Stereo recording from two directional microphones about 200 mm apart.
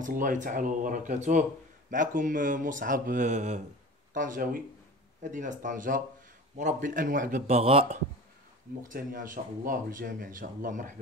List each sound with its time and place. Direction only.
0.0 s speech: 40° right (ahead or behind)
8.8 s speech: 45° right (ahead or behind)